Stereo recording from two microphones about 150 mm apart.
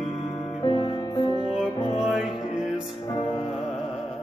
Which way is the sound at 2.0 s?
Centre (ahead or behind).